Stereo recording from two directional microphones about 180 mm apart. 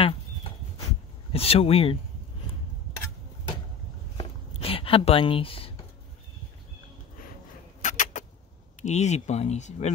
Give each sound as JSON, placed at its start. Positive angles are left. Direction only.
{"t": 1.3, "sound": "speech", "side_deg": 35}
{"t": 4.2, "sound": "a sound", "side_deg": 30}
{"t": 7.8, "sound": "vehicle", "side_deg": 45}
{"t": 8.8, "sound": "speech", "side_deg": 40}